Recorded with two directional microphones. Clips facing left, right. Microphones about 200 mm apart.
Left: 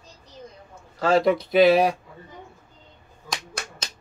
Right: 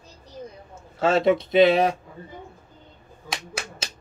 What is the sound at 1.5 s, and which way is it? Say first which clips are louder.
Speech: left 1 dB; centre (ahead or behind).